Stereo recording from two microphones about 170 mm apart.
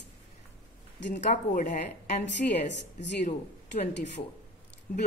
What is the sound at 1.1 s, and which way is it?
A woman's voice, 45° left (ahead or behind).